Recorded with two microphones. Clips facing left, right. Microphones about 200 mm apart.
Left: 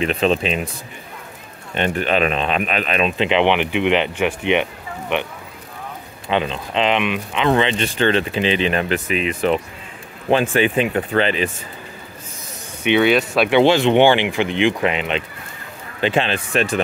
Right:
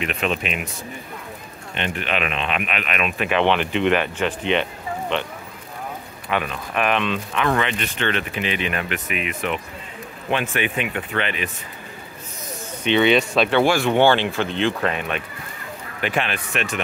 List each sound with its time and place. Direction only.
0.0 s speech: 30° left (ahead or behind)
1.8 s speech: 40° left (ahead or behind); by 4.6 s 15° left (ahead or behind)
6.2 s speech: 25° left (ahead or behind)
12.8 s speech: 5° left (ahead or behind)
13.6 s speech: 20° left (ahead or behind)